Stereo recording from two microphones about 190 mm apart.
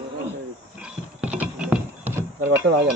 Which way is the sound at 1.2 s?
5° right (ahead or behind).